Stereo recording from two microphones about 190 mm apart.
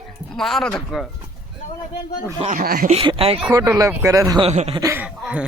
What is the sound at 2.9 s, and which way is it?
Speech, 30° right (ahead or behind).